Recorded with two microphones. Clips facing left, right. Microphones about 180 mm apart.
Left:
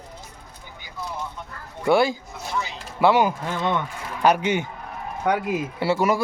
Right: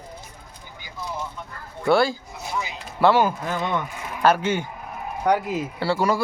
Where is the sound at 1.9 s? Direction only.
15° left (ahead or behind).